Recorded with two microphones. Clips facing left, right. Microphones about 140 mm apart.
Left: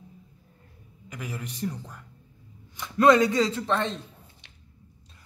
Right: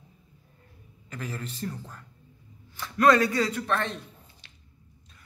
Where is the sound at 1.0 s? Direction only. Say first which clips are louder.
Even; 10° left (ahead or behind).